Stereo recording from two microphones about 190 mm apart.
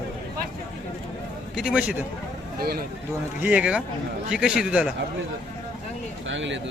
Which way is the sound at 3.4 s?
5° right (ahead or behind).